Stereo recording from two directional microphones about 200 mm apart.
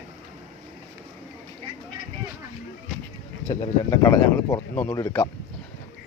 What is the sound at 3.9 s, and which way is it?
Speech, 15° left (ahead or behind).